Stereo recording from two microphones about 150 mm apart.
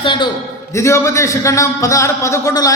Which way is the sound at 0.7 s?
20° left (ahead or behind).